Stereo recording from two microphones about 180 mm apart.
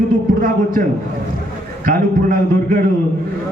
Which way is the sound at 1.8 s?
50° right (ahead or behind).